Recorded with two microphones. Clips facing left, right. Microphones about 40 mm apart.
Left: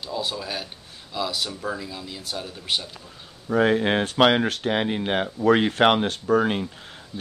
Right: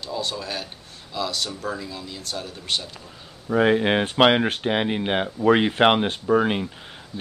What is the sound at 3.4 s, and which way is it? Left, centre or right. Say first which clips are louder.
Speech: right 1 dB; centre.